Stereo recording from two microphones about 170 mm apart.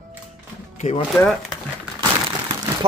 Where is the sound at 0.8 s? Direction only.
35° left (ahead or behind).